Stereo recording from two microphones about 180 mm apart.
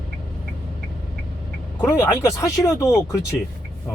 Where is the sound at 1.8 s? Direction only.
15° left (ahead or behind).